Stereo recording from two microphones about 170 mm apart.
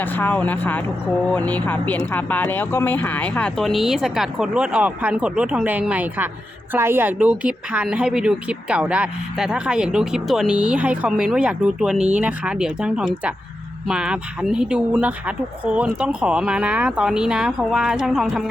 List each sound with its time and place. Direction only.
0.0 s speech: 10° left (ahead or behind); by 11.9 s 5° right (ahead or behind)
11.9 s speech: 40° right (ahead or behind)
12.2 s speech: 5° right (ahead or behind)